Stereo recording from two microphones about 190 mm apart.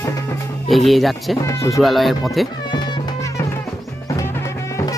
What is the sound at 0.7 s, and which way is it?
Speech, centre (ahead or behind).